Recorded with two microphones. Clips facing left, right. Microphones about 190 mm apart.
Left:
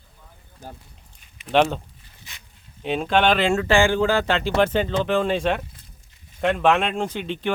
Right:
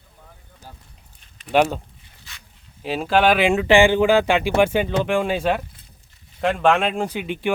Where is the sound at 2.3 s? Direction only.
20° left (ahead or behind).